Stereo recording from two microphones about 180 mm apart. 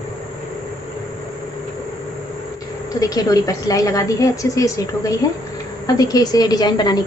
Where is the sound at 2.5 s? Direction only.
20° left (ahead or behind).